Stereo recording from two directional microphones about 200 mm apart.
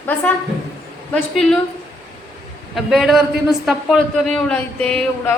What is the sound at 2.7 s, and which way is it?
A woman's voice, centre (ahead or behind).